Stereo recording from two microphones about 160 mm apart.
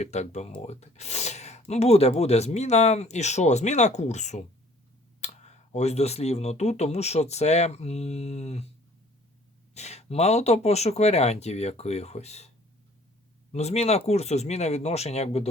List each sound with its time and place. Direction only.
0.0 s speech: 45° left (ahead or behind)
9.7 s speech: 45° left (ahead or behind)
13.5 s speech: 40° left (ahead or behind)